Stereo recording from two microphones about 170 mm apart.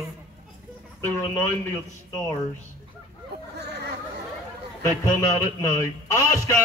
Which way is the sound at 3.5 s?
75° right (ahead or behind).